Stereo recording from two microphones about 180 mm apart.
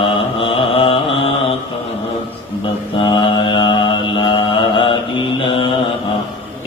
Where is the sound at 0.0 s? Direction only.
30° left (ahead or behind).